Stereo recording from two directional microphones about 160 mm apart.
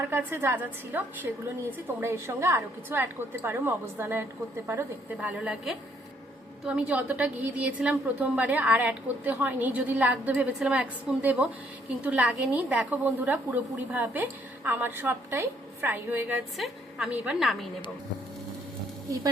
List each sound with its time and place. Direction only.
0.1 s a woman's voice: 10° right (ahead or behind)